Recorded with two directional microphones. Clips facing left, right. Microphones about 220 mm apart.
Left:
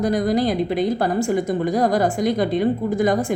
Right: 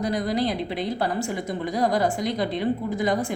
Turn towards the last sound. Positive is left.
turn(degrees=50)  # may be behind; listen again after turning